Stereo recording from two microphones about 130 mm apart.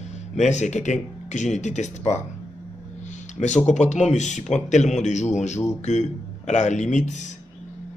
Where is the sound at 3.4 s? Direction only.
65° left (ahead or behind).